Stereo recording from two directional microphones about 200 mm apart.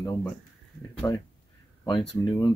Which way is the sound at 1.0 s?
20° left (ahead or behind).